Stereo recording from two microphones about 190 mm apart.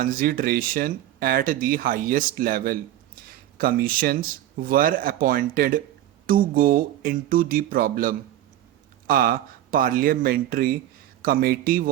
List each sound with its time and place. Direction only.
0.0 s speech: 50° right (ahead or behind)